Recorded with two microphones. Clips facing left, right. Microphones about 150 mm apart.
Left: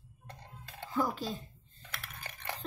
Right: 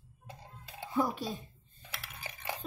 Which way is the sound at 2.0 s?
10° right (ahead or behind).